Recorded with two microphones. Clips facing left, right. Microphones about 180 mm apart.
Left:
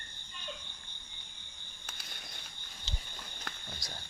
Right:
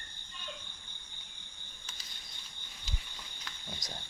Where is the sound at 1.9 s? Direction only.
60° left (ahead or behind).